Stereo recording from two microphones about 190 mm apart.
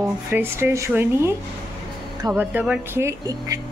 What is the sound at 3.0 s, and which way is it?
Speech, 20° right (ahead or behind).